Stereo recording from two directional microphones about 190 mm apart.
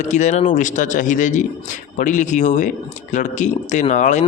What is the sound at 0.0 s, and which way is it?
Speech, 40° left (ahead or behind).